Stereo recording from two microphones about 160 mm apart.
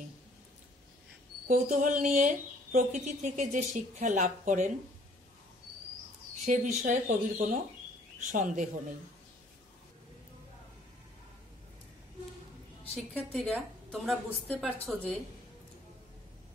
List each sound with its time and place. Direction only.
1.5 s speech: 50° right (ahead or behind)
6.4 s speech: 50° right (ahead or behind)
12.9 s a woman's voice: 5° left (ahead or behind)